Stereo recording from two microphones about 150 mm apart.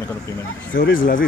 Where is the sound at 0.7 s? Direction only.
75° left (ahead or behind).